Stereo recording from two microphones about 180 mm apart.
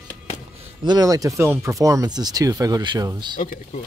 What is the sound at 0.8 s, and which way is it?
Speech, 20° right (ahead or behind).